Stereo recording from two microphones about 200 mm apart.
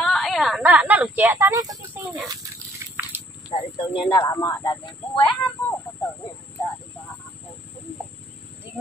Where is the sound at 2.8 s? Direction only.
15° right (ahead or behind).